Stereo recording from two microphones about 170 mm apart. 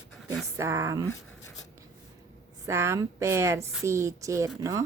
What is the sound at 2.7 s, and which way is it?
Speech, 15° right (ahead or behind).